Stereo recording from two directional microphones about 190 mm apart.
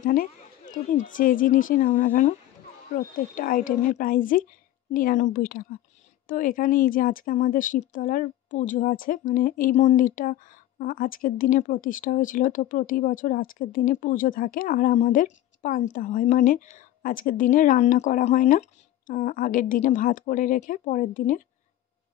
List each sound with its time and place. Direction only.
0.0 s speech: 45° left (ahead or behind)
3.3 s speech: 45° left (ahead or behind)